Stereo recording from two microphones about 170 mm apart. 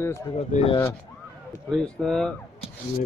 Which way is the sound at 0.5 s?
45° left (ahead or behind).